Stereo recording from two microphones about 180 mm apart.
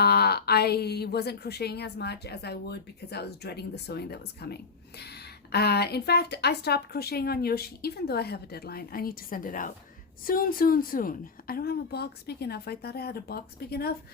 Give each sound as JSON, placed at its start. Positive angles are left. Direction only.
{"t": 0.0, "sound": "a woman's voice", "side_deg": 60}